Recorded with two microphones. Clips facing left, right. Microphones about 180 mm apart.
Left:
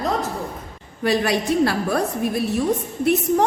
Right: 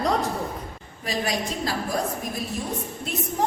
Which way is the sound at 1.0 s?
70° left (ahead or behind).